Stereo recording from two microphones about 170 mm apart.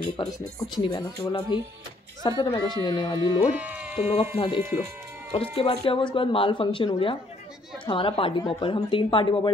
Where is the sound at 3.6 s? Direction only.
10° right (ahead or behind).